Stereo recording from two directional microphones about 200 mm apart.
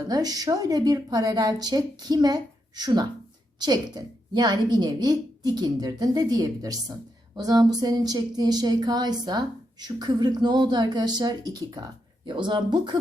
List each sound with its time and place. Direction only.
0.1 s a woman's voice: 20° right (ahead or behind)